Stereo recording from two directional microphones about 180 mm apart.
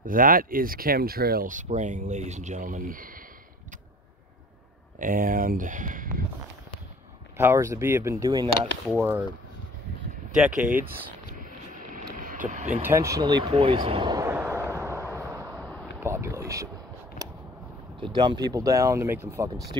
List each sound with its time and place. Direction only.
0.0 s speech: 50° right (ahead or behind)
4.9 s speech: 50° right (ahead or behind)
7.3 s speech: 15° right (ahead or behind)
10.3 s speech: 5° right (ahead or behind)
11.9 s vehicle: 45° right (ahead or behind)
12.8 s vehicle: 15° right (ahead or behind)
15.6 s a sound: centre (ahead or behind)
16.0 s a sound: 15° right (ahead or behind)
18.0 s speech: 25° right (ahead or behind)